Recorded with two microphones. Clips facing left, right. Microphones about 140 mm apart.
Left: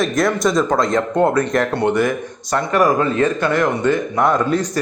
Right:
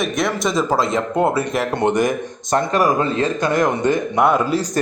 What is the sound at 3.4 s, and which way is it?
Speech, 15° right (ahead or behind).